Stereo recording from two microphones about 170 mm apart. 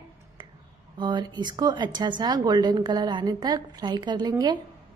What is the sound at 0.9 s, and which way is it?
A woman's voice, 25° right (ahead or behind).